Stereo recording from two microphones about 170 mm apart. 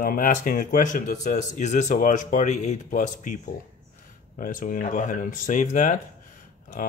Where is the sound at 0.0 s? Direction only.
55° left (ahead or behind).